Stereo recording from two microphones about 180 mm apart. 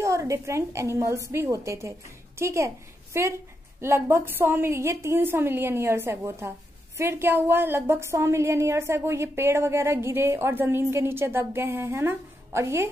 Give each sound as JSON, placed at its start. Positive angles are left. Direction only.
{"t": 0.0, "sound": "a woman's voice", "side_deg": -15}